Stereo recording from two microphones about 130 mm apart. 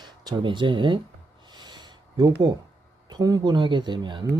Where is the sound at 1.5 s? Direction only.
35° right (ahead or behind).